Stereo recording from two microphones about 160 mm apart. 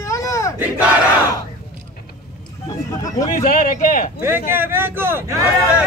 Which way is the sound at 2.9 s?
20° left (ahead or behind).